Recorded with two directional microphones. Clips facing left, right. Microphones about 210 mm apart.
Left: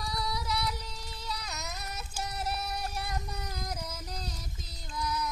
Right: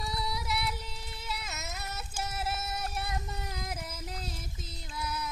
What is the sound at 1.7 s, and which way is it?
Child singing, 25° right (ahead or behind).